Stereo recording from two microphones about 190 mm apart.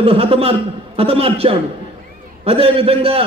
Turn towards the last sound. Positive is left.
turn(degrees=-30)  # may be behind; listen again after turning